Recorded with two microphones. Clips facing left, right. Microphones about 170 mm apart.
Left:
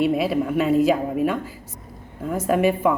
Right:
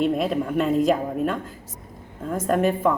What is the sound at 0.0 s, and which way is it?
A woman's voice, 5° left (ahead or behind).